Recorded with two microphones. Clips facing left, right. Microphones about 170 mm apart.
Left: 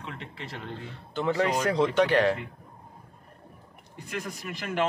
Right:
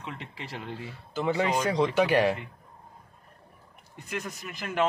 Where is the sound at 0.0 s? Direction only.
5° right (ahead or behind).